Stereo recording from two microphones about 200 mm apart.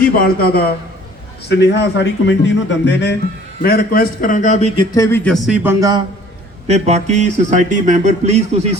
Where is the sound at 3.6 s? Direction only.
50° left (ahead or behind).